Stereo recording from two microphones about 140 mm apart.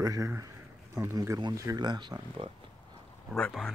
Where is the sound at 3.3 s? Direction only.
5° left (ahead or behind).